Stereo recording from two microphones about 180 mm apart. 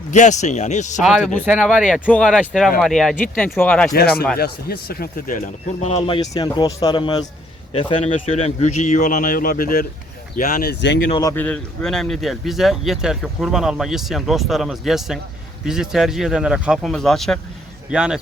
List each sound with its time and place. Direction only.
0.1 s speech: 40° left (ahead or behind)
1.0 s speech: centre (ahead or behind)
4.4 s speech: 60° left (ahead or behind)
5.8 s a man's voice: 30° left (ahead or behind); by 11.0 s 70° left (ahead or behind)
11.1 s speech: 20° left (ahead or behind); by 18.2 s 5° right (ahead or behind)